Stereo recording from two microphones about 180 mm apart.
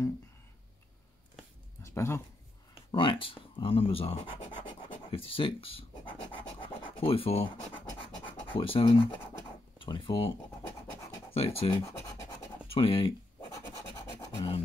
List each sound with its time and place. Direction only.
1.8 s a sound: 15° left (ahead or behind)
2.9 s speech: 30° left (ahead or behind)
7.9 s scratch: 30° left (ahead or behind)
9.8 s speech: 25° left (ahead or behind)
11.3 s speech: 30° left (ahead or behind)
11.7 s scratch: 20° left (ahead or behind)
12.6 s scratch: 30° left (ahead or behind)